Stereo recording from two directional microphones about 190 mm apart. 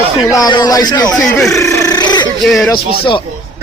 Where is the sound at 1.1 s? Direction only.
5° left (ahead or behind).